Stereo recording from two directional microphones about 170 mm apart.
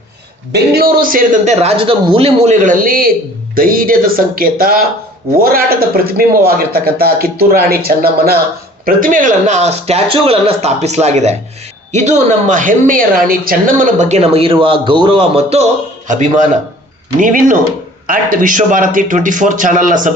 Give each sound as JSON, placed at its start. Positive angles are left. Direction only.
{"t": 0.5, "sound": "a man's voice", "side_deg": -65}
{"t": 8.9, "sound": "a woman's voice", "side_deg": -55}
{"t": 16.0, "sound": "a man's voice", "side_deg": -45}